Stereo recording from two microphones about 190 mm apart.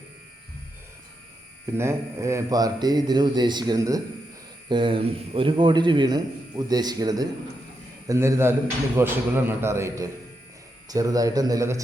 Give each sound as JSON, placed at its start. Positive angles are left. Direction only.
{"t": 1.7, "sound": "a man's voice", "side_deg": -15}